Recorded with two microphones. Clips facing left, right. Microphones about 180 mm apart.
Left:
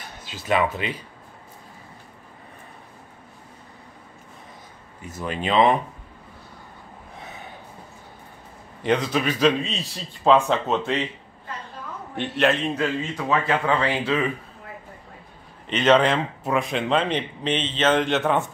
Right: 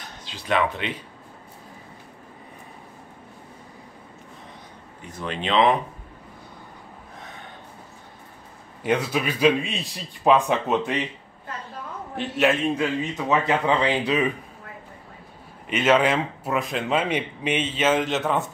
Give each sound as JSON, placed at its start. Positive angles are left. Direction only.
{"t": 0.2, "sound": "speech", "side_deg": 5}
{"t": 5.1, "sound": "speech", "side_deg": 5}
{"t": 7.2, "sound": "gasp", "side_deg": 5}
{"t": 8.8, "sound": "a man's voice", "side_deg": -10}
{"t": 12.2, "sound": "a man's voice", "side_deg": -5}
{"t": 15.6, "sound": "a man's voice", "side_deg": -10}